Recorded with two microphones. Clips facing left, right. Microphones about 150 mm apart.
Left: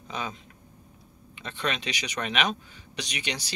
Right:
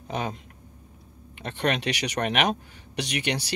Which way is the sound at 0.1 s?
60° right (ahead or behind).